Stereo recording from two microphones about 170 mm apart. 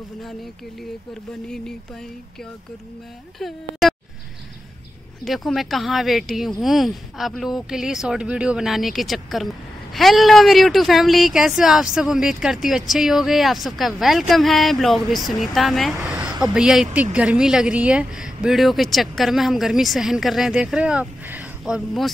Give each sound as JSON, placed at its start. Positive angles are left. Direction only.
{"t": 3.3, "sound": "speech", "side_deg": 0}
{"t": 5.2, "sound": "speech", "side_deg": 0}
{"t": 16.3, "sound": "a sound", "side_deg": -20}
{"t": 16.5, "sound": "speech", "side_deg": -5}